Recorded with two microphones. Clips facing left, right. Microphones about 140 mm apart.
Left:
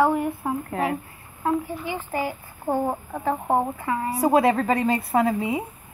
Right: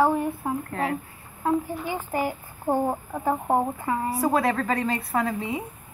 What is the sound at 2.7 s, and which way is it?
Speech, 10° right (ahead or behind).